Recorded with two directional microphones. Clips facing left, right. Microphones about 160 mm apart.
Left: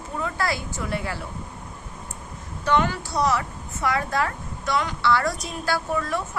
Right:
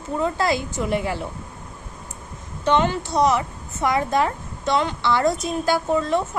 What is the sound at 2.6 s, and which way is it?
Speech, 20° right (ahead or behind).